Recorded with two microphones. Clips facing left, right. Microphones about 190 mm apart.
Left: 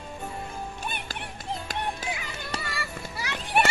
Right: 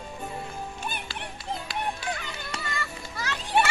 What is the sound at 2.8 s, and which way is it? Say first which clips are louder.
Children playing: even; 10° left (ahead or behind).